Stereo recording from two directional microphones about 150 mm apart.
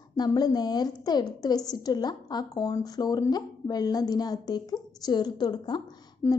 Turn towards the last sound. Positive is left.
turn(degrees=25)  # may be behind; listen again after turning